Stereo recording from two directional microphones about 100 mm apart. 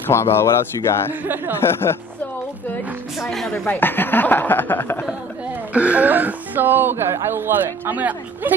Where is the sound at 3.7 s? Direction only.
20° left (ahead or behind).